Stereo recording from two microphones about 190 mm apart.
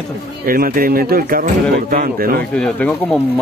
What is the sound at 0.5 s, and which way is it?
A man's voice, 50° right (ahead or behind).